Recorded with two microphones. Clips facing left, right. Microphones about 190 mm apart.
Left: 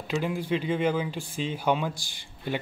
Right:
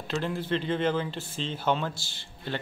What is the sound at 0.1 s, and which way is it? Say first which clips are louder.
Speech: left 2 dB; 10° left (ahead or behind).